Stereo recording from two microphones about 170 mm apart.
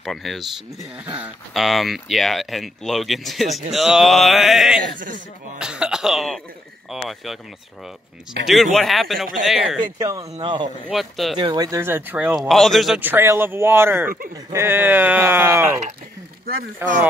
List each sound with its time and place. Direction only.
0.0 s speech: centre (ahead or behind)
5.6 s cough: 5° right (ahead or behind)
6.9 s speech: centre (ahead or behind)
8.7 s speech: centre (ahead or behind)
9.9 s speech: 20° right (ahead or behind)
10.9 s speech: centre (ahead or behind)
11.3 s speech: 25° right (ahead or behind)
16.8 s speech: 15° right (ahead or behind)